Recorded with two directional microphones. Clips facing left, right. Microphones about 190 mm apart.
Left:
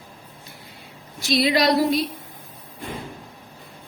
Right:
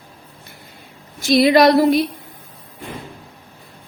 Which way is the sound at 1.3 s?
55° right (ahead or behind).